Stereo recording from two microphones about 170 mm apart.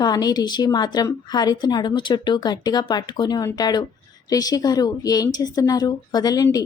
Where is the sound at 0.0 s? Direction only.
25° left (ahead or behind).